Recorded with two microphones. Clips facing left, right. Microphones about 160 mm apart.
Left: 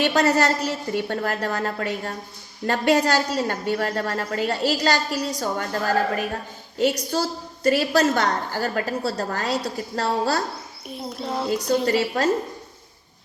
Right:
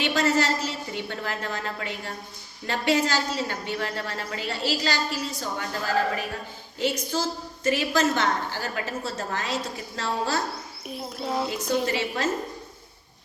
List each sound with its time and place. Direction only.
0.0 s a woman's voice: 40° left (ahead or behind)
10.8 s a child's voice: centre (ahead or behind)
11.5 s a woman's voice: 35° left (ahead or behind)